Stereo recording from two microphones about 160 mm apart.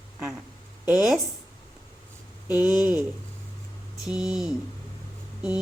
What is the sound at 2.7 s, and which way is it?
Speech, 10° right (ahead or behind).